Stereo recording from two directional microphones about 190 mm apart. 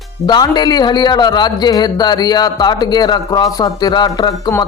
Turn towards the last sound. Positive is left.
turn(degrees=25)  # may be behind; listen again after turning